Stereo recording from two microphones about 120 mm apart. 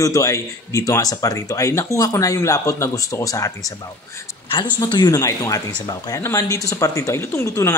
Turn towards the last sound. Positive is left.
turn(degrees=25)  # may be behind; listen again after turning